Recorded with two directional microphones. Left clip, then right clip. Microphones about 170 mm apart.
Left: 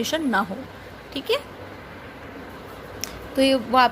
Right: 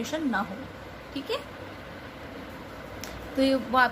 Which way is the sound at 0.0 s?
50° left (ahead or behind).